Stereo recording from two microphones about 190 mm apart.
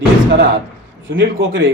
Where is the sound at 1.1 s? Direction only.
85° right.